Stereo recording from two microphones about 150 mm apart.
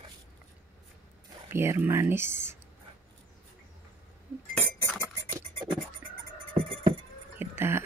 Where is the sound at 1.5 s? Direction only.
15° right (ahead or behind).